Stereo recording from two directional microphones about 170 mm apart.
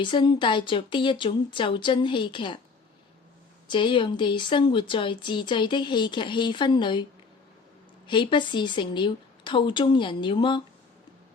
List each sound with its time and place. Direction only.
0.0 s speech: 30° left (ahead or behind)
3.7 s speech: 30° left (ahead or behind)
8.0 s speech: 30° left (ahead or behind)